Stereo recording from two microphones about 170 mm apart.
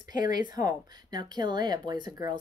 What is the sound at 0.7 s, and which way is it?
Speech, 25° right (ahead or behind).